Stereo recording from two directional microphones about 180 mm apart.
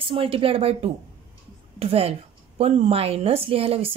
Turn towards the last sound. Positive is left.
turn(degrees=-35)  # may be behind; listen again after turning